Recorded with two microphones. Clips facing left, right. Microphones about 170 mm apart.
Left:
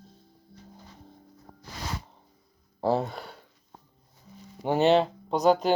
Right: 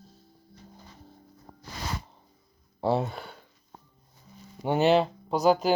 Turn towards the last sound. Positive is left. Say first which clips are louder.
# even
turn(degrees=-5)  # may be behind; listen again after turning